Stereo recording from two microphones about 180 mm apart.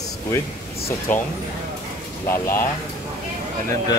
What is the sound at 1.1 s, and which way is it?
Speech, 10° left (ahead or behind).